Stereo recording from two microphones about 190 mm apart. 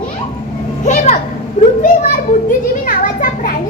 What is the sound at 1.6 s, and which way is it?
Speech, 40° left (ahead or behind).